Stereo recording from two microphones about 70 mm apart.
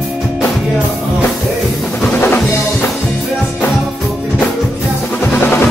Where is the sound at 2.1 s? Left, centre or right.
Left.